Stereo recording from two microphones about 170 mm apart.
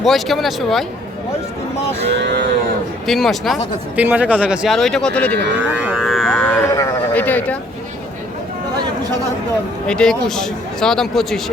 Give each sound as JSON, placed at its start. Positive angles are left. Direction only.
{"t": 0.0, "sound": "speech", "side_deg": 0}
{"t": 2.0, "sound": "cattle", "side_deg": -80}
{"t": 3.1, "sound": "speech", "side_deg": 0}
{"t": 5.7, "sound": "a sound", "side_deg": -5}
{"t": 9.8, "sound": "speech", "side_deg": 5}